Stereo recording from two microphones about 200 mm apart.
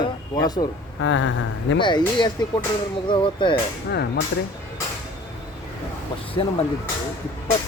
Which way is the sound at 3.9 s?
55° left (ahead or behind).